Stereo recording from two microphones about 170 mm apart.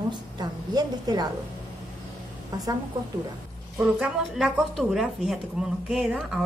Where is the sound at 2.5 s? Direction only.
20° right (ahead or behind).